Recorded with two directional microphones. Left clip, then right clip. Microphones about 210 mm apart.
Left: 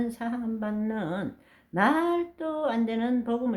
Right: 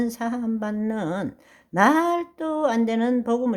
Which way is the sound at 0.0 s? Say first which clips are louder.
Right 5 dB; 45° right (ahead or behind).